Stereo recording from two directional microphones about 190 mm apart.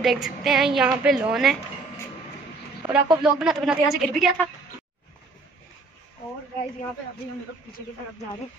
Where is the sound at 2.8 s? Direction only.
5° right (ahead or behind).